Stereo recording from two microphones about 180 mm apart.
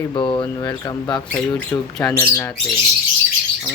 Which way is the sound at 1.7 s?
Centre (ahead or behind).